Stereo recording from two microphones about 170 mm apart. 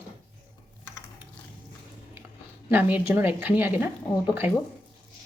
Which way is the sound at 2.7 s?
10° right (ahead or behind).